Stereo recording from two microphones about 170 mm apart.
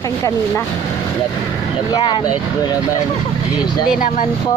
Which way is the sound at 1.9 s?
25° left (ahead or behind).